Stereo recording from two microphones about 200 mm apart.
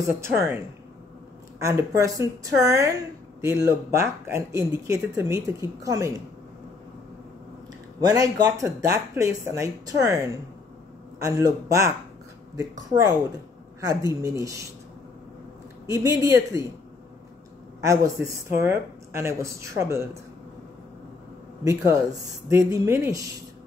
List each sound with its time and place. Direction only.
0.1 s speech: 10° right (ahead or behind)
8.0 s speech: 20° right (ahead or behind)
15.9 s speech: 15° right (ahead or behind)
17.7 s speech: 15° right (ahead or behind)
21.6 s speech: 15° right (ahead or behind)